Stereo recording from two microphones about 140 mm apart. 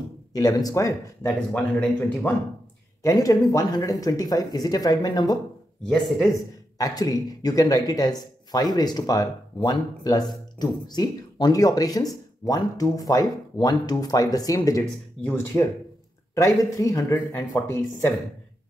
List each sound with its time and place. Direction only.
0.3 s speech: 25° left (ahead or behind)
1.2 s a man's voice: 10° left (ahead or behind)
3.0 s a man's voice: 25° left (ahead or behind)